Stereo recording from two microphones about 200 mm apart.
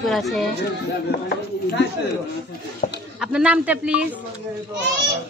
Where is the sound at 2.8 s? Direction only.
40° left (ahead or behind).